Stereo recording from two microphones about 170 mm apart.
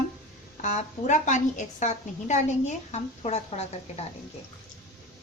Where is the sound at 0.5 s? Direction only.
45° left (ahead or behind).